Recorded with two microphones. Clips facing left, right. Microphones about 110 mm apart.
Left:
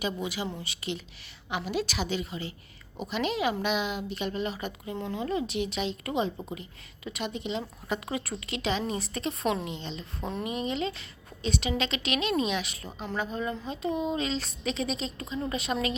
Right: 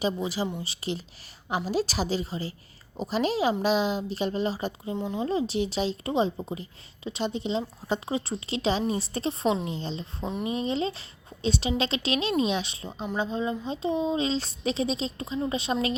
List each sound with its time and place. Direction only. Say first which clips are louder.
0.0 s a woman's voice: right 4 dB; 35° right (ahead or behind)